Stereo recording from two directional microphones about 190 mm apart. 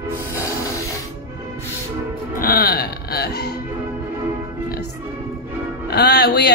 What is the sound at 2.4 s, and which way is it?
Music, 50° left (ahead or behind).